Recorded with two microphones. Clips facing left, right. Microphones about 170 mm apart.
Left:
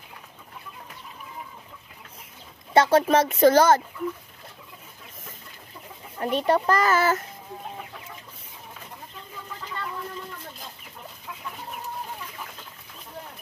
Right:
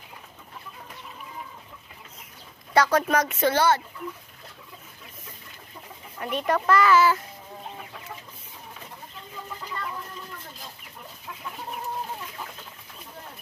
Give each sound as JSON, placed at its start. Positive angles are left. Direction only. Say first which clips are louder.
{"t": 2.7, "sound": "speech", "louder": "left 3 dB", "side_deg": 25}
{"t": 6.1, "sound": "speech", "louder": "left 4 dB", "side_deg": 35}